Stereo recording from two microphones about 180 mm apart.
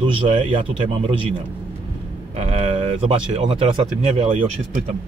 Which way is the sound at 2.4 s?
30° right (ahead or behind).